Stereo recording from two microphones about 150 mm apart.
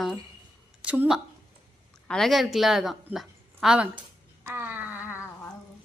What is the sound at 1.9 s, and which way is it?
A woman's voice, 5° left (ahead or behind).